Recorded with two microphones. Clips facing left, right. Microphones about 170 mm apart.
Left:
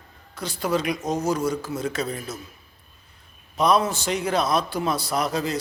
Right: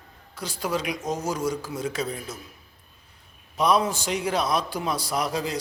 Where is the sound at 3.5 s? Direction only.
10° right (ahead or behind).